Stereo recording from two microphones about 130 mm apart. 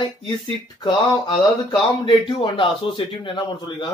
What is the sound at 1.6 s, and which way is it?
Speech, 35° left (ahead or behind).